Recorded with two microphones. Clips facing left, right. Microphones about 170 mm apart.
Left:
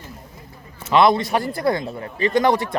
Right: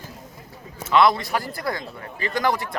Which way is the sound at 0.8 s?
20° left (ahead or behind).